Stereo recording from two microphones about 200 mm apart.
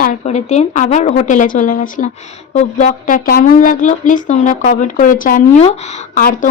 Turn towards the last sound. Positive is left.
turn(degrees=40)  # may be behind; listen again after turning